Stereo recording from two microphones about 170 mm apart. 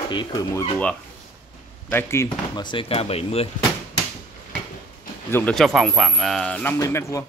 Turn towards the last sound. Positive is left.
turn(degrees=15)  # may be behind; listen again after turning